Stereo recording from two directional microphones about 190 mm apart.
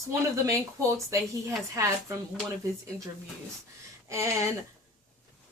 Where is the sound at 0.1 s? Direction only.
15° right (ahead or behind).